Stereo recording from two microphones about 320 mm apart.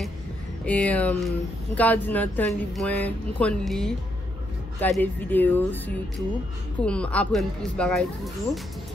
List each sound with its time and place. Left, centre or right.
0.7 s speech: centre
6.8 s speech: centre